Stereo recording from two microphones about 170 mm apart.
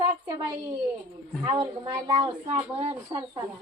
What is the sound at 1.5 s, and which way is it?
Speech, 25° right (ahead or behind).